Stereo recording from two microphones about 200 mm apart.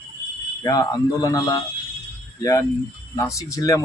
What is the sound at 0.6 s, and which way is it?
Speech, 20° left (ahead or behind).